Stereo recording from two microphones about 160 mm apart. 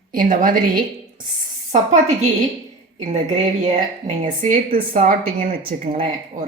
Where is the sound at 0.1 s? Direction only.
60° right (ahead or behind).